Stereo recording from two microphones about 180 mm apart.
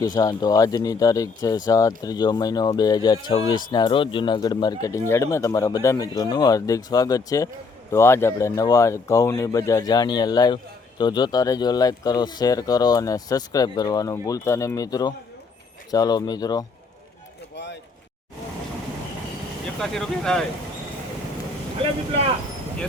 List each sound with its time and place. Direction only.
0.0 s speech: 20° left (ahead or behind)
17.5 s a sound: 75° left (ahead or behind)
19.8 s speech: 5° left (ahead or behind)